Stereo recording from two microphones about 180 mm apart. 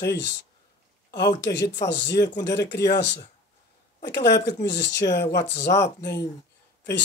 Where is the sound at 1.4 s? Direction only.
70° left (ahead or behind).